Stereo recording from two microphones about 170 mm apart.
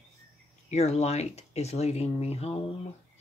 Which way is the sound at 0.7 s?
40° left (ahead or behind).